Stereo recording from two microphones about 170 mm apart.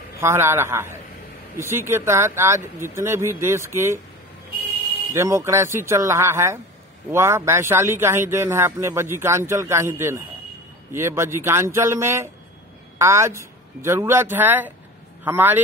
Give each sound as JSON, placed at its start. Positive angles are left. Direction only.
{"t": 0.2, "sound": "a man's voice", "side_deg": -15}
{"t": 5.1, "sound": "a man's voice", "side_deg": -15}